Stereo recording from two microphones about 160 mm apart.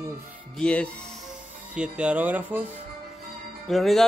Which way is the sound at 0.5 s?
5° left (ahead or behind).